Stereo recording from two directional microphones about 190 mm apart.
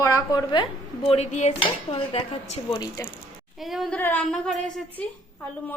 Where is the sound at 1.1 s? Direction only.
35° left (ahead or behind); by 3.1 s 20° left (ahead or behind).